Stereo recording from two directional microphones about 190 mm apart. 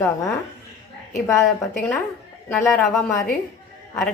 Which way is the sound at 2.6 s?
15° left (ahead or behind).